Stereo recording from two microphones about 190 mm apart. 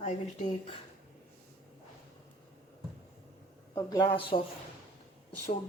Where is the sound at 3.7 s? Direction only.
20° left (ahead or behind).